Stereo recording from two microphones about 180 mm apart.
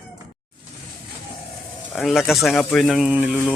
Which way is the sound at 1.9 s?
Centre (ahead or behind).